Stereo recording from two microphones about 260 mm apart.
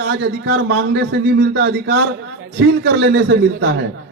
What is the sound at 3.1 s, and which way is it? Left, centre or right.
Speech, right.